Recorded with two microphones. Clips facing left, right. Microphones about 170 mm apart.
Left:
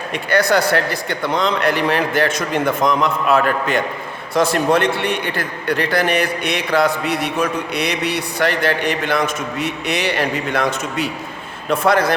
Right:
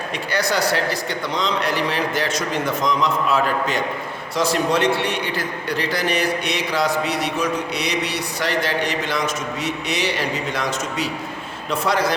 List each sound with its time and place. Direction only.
0.1 s a man's voice: 55° left (ahead or behind)